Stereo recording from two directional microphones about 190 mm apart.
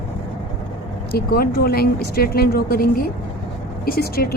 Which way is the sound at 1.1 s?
50° left (ahead or behind).